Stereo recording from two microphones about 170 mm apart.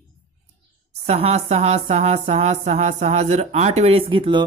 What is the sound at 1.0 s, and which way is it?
A woman's voice, 40° right (ahead or behind).